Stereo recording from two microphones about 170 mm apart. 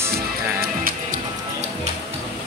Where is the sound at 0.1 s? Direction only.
60° right (ahead or behind).